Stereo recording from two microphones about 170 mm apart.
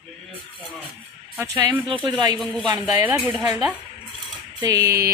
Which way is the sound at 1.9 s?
25° right (ahead or behind).